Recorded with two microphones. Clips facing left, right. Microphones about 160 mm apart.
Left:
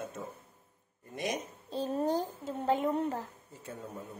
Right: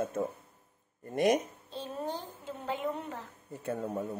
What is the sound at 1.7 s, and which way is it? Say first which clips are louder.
A woman's voice: left 7 dB; 40° left (ahead or behind).